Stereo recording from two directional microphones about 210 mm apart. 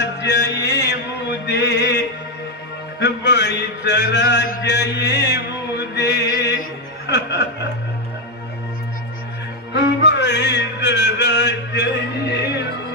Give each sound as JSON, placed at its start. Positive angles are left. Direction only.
{"t": 0.0, "sound": "music", "side_deg": 55}
{"t": 9.8, "sound": "music", "side_deg": 55}